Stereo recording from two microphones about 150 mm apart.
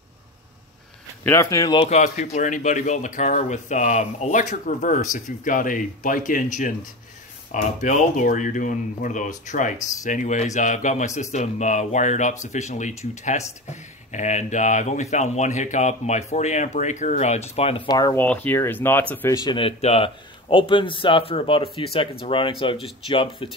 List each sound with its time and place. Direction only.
1.2 s speech: 20° left (ahead or behind)
1.9 s speech: 50° left (ahead or behind)
17.6 s speech: 40° left (ahead or behind)
17.8 s speech: 25° left (ahead or behind)
18.1 s speech: 10° left (ahead or behind)
19.3 s speech: 30° left (ahead or behind)